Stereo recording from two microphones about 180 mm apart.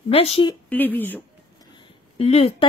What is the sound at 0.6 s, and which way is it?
Speech, 10° left (ahead or behind).